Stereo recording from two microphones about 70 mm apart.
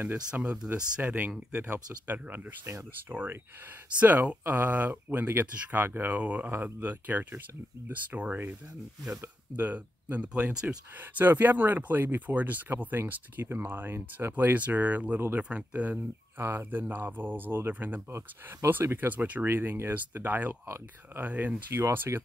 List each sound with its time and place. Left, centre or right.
0.3 s speech: centre
2.0 s speech: right
11.0 s speech: right
14.3 s speech: right
16.3 s speech: right
19.4 s speech: right
20.6 s speech: right
21.2 s speech: right